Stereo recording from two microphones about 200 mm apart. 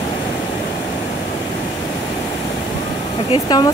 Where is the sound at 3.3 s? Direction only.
20° left (ahead or behind).